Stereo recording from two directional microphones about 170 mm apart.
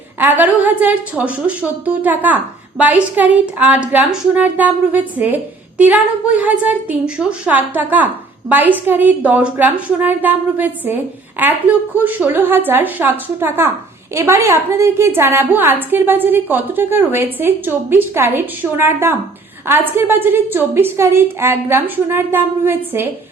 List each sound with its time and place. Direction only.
0.2 s a woman's voice: 10° right (ahead or behind)